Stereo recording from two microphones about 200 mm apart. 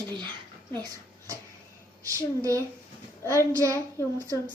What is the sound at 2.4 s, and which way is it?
Child singing, 15° right (ahead or behind).